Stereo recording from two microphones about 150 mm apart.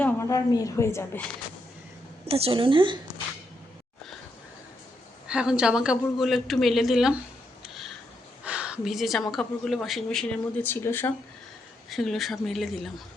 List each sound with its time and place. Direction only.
0.0 s a woman's voice: 20° left (ahead or behind)
2.2 s a woman's voice: 40° right (ahead or behind)
5.3 s a woman's voice: 5° right (ahead or behind)
7.6 s a sound: centre (ahead or behind)
9.3 s a woman's voice: centre (ahead or behind)
11.9 s a woman's voice: centre (ahead or behind)